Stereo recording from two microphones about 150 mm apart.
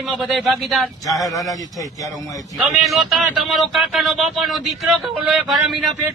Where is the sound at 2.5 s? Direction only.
Centre (ahead or behind).